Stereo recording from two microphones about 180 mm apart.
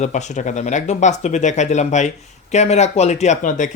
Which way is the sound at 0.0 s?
40° left (ahead or behind).